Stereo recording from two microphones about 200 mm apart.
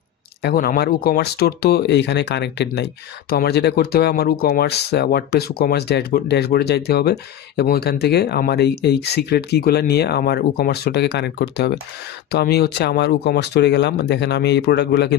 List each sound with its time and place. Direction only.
0.4 s speech: 50° left (ahead or behind)